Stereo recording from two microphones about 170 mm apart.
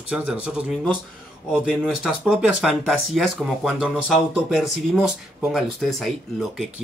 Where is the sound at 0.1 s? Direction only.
5° right (ahead or behind).